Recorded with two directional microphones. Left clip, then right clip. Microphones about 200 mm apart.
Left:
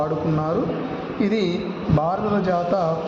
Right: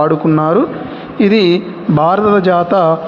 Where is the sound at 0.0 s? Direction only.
40° right (ahead or behind).